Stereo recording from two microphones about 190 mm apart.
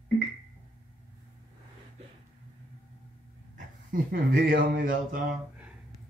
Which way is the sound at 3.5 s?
50° right (ahead or behind).